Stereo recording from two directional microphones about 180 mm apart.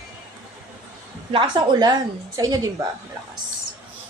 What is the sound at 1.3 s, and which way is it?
A woman's voice, 25° right (ahead or behind).